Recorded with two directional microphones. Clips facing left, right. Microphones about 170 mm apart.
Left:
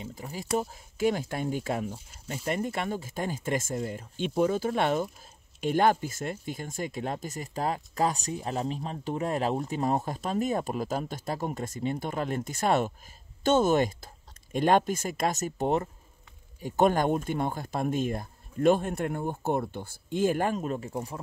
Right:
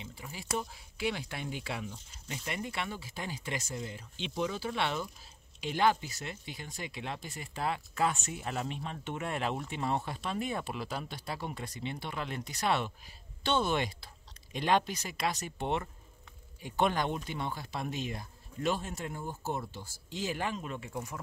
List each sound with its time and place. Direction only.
0.0 s speech: 40° left (ahead or behind)